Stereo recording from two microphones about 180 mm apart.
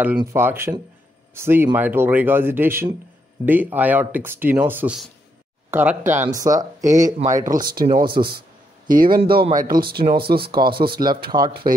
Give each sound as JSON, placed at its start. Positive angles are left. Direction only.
{"t": 0.2, "sound": "speech", "side_deg": -15}
{"t": 7.6, "sound": "speech", "side_deg": -55}